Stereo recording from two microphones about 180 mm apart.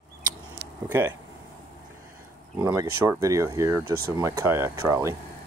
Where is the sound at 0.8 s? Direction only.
15° right (ahead or behind).